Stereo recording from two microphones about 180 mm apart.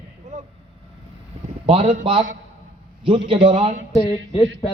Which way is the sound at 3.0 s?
30° right (ahead or behind).